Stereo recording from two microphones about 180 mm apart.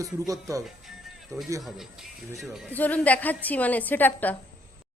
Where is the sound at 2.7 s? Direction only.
10° left (ahead or behind).